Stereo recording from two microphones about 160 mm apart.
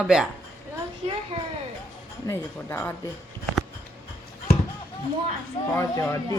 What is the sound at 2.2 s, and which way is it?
Speech, 15° left (ahead or behind).